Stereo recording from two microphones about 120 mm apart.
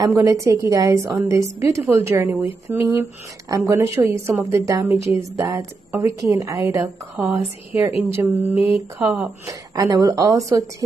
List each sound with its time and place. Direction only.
0.1 s a woman's voice: 25° right (ahead or behind); by 9.3 s 5° right (ahead or behind)
9.5 s a woman's voice: 30° right (ahead or behind)